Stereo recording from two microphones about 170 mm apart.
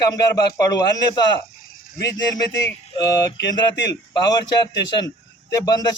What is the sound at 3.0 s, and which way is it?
Mantra, 90° left.